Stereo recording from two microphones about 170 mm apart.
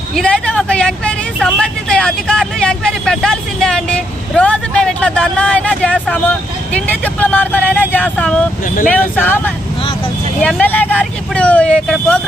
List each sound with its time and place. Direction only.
0.2 s speech: 5° left (ahead or behind)
8.6 s speech: 55° left (ahead or behind)
8.9 s speech: 10° left (ahead or behind)